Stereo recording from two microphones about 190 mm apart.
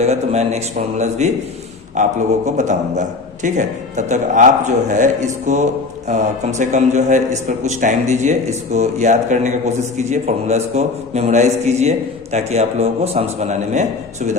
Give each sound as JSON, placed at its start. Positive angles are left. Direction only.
{"t": 0.0, "sound": "a man's voice", "side_deg": -35}